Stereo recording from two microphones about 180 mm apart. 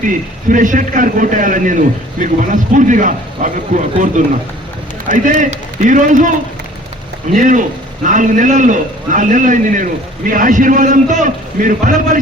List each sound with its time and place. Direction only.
0.0 s a man's voice: 45° right (ahead or behind)
7.3 s a man's voice: 45° right (ahead or behind)